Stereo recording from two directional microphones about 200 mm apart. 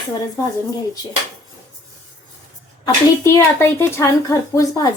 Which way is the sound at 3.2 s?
15° left (ahead or behind).